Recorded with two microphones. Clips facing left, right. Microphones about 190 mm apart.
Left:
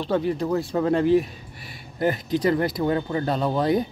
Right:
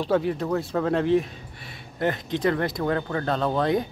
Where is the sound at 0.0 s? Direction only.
Centre (ahead or behind).